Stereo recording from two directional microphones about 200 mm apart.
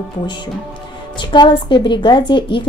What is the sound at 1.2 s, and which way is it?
A woman's voice, 25° left (ahead or behind).